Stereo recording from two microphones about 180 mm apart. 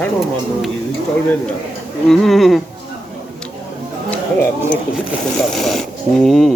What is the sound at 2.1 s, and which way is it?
Speech, centre (ahead or behind).